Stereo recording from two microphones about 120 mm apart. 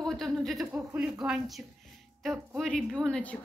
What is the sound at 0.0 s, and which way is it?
A woman's voice, 5° left (ahead or behind).